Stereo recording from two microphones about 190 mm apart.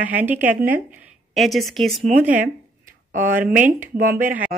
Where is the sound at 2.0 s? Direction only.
40° right (ahead or behind).